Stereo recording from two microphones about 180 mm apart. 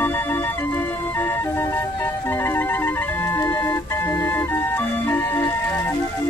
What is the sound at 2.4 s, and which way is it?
Music, 15° left (ahead or behind).